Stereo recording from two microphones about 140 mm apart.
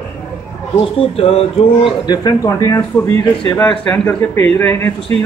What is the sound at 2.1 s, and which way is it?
Speech, 30° left (ahead or behind).